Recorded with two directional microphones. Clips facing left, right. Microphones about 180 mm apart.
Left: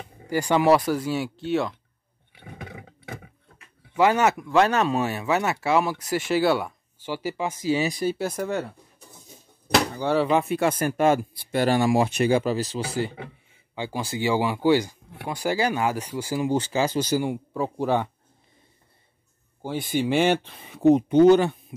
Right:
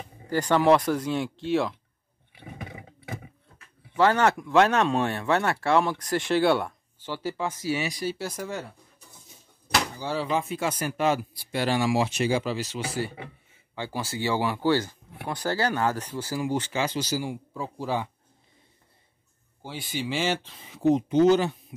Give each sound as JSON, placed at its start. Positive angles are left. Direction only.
{"t": 0.3, "sound": "speech", "side_deg": 10}
{"t": 3.9, "sound": "speech", "side_deg": 10}
{"t": 8.0, "sound": "speech", "side_deg": 55}
{"t": 9.9, "sound": "speech", "side_deg": 60}
{"t": 12.5, "sound": "speech", "side_deg": 40}
{"t": 13.7, "sound": "speech", "side_deg": 15}
{"t": 16.3, "sound": "speech", "side_deg": 30}
{"t": 19.6, "sound": "speech", "side_deg": 50}